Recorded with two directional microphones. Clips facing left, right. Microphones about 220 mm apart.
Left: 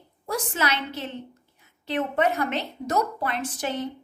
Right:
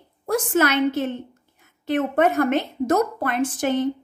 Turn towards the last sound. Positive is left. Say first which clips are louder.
# right 8 dB
turn(degrees=-50)  # may be behind; listen again after turning